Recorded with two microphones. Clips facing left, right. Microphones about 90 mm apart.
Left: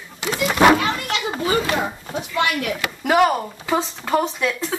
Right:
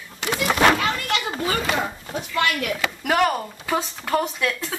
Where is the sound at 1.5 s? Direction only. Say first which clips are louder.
Left 4 dB; 5° left (ahead or behind).